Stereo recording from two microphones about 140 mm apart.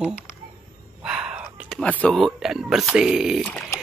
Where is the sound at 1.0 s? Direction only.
5° right (ahead or behind).